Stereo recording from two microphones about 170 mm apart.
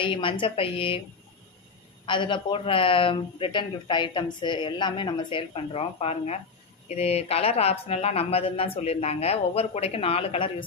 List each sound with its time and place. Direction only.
0.0 s speech: 30° left (ahead or behind)
2.0 s speech: 30° left (ahead or behind)